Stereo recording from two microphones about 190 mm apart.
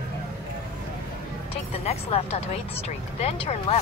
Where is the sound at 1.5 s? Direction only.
30° left (ahead or behind).